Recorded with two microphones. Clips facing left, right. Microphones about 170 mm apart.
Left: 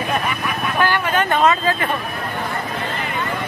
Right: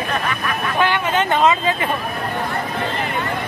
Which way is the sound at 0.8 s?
20° right (ahead or behind).